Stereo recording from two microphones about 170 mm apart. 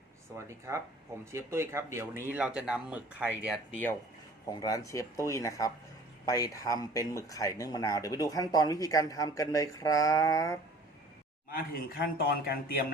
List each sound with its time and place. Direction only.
0.3 s speech: 15° right (ahead or behind)
4.4 s speech: 20° left (ahead or behind)
11.5 s a man's voice: 60° left (ahead or behind)